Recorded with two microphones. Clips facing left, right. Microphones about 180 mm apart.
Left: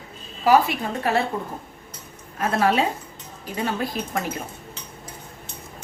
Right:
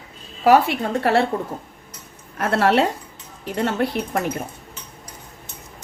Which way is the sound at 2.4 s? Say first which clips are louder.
Right 3 dB; 75° right (ahead or behind).